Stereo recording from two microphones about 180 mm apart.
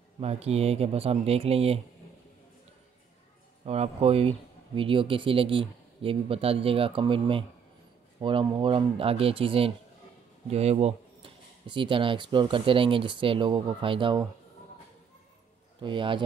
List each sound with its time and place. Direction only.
0.2 s speech: 35° right (ahead or behind)
3.6 s speech: 35° right (ahead or behind)
15.8 s speech: 25° right (ahead or behind)